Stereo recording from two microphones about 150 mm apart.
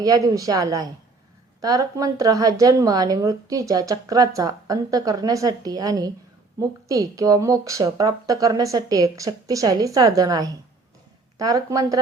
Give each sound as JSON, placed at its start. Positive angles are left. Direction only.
{"t": 0.0, "sound": "speech", "side_deg": -20}